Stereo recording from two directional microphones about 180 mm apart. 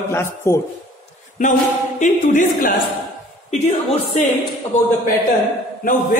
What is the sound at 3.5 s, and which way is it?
Speech, 35° left (ahead or behind).